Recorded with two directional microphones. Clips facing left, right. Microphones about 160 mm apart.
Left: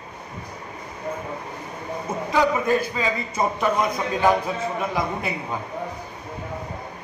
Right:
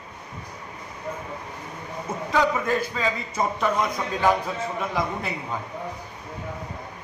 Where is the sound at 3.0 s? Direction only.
10° left (ahead or behind).